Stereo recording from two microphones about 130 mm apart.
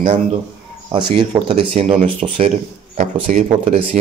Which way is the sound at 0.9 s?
40° right (ahead or behind).